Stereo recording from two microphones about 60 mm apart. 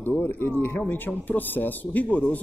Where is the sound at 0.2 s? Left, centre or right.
Left.